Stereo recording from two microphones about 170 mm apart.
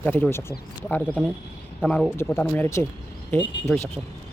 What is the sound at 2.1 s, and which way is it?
Speech, 10° left (ahead or behind).